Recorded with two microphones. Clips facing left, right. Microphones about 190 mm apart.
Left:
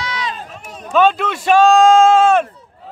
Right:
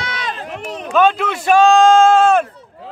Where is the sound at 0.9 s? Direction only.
Centre (ahead or behind).